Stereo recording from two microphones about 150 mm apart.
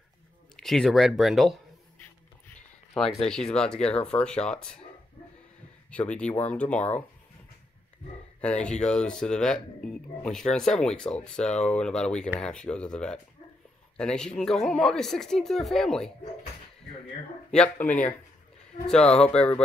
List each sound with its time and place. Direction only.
0.6 s speech: 5° left (ahead or behind)
2.9 s speech: 5° left (ahead or behind)
5.9 s speech: 10° left (ahead or behind)
8.6 s speech: 5° left (ahead or behind)
17.5 s speech: 10° left (ahead or behind)